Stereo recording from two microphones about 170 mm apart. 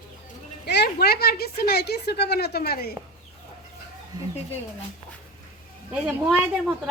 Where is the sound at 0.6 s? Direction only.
75° left (ahead or behind).